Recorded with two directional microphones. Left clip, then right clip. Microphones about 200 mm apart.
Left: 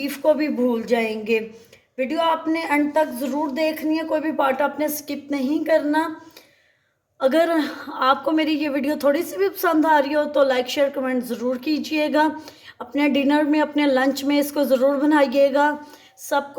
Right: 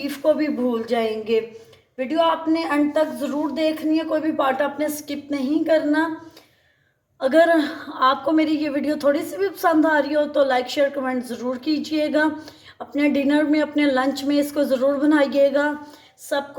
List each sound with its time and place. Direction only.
0.0 s a woman's voice: 25° left (ahead or behind)
7.2 s a woman's voice: 25° left (ahead or behind)